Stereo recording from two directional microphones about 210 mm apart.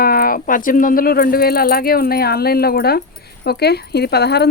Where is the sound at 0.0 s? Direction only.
45° left (ahead or behind).